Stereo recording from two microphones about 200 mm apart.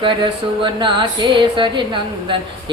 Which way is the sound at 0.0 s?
25° right (ahead or behind).